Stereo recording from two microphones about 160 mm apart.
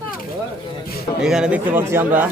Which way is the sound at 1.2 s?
5° right (ahead or behind).